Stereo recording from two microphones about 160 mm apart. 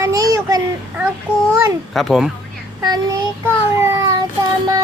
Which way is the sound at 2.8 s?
25° right (ahead or behind).